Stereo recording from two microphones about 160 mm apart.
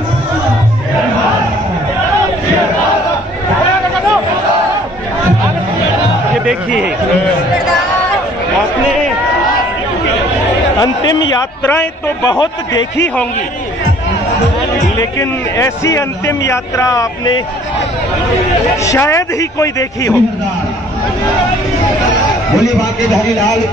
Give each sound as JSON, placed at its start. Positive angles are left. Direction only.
{"t": 12.3, "sound": "a man's voice", "side_deg": 25}
{"t": 13.0, "sound": "a man's voice", "side_deg": 10}
{"t": 15.0, "sound": "a man's voice", "side_deg": 20}
{"t": 18.9, "sound": "a man's voice", "side_deg": 20}